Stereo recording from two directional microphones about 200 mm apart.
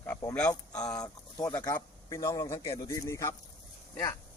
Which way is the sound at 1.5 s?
20° left (ahead or behind).